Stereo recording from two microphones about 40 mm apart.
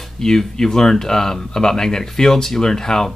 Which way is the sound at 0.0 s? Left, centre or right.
Centre.